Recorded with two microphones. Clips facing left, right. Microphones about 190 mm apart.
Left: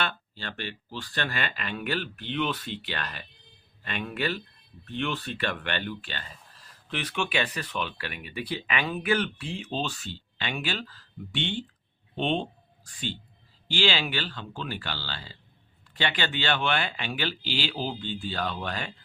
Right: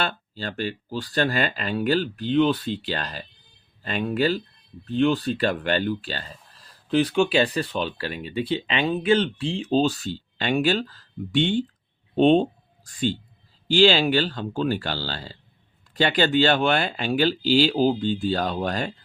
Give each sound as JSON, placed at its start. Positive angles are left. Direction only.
{"t": 0.0, "sound": "speech", "side_deg": -35}